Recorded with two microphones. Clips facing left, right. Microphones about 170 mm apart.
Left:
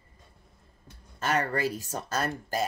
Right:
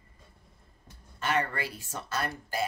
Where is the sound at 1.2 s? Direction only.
40° left (ahead or behind).